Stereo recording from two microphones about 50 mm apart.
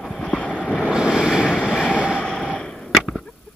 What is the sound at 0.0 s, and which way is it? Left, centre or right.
Vehicle, centre.